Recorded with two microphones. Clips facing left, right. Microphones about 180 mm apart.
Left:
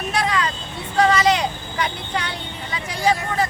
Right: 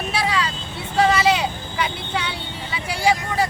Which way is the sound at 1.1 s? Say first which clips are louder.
Left 1 dB; 10° right (ahead or behind).